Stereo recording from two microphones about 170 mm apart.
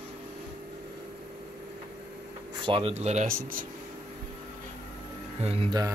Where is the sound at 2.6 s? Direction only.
35° right (ahead or behind); by 3.7 s 55° right (ahead or behind).